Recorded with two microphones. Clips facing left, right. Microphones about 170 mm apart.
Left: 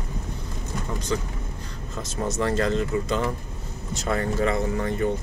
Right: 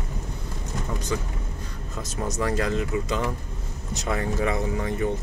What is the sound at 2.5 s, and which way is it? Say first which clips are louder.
Speech: left 2 dB; 10° right (ahead or behind).